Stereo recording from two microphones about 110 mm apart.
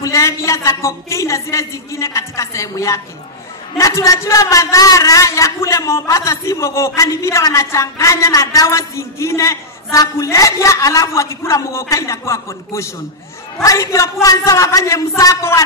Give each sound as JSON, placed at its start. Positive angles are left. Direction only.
{"t": 0.0, "sound": "a man's voice", "side_deg": 30}